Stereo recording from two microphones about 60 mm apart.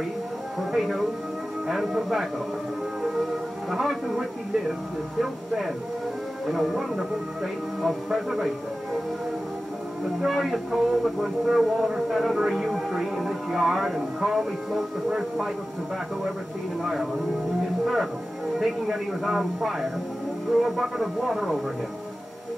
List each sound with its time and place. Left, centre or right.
0.6 s music: centre
1.7 s speech: centre
3.7 s speech: centre
6.4 s speech: centre
10.2 s speech: centre
16.8 s speech: centre
18.6 s speech: centre